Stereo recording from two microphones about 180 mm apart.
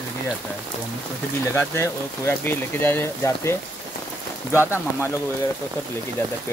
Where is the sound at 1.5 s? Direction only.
15° left (ahead or behind).